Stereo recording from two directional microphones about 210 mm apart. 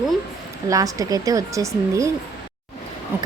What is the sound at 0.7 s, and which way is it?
A woman's voice, 15° right (ahead or behind).